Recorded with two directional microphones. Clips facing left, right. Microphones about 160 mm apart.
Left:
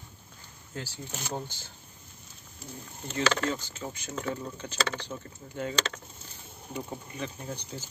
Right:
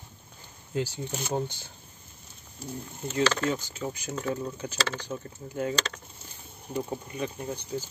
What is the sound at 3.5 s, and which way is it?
Speech, 10° right (ahead or behind).